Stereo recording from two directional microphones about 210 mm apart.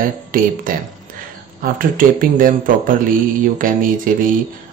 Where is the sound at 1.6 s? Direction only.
40° right (ahead or behind).